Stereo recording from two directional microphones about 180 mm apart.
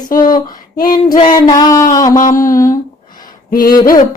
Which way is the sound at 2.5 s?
15° left (ahead or behind).